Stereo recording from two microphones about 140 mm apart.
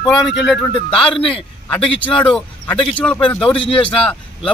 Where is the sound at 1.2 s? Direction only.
40° left (ahead or behind).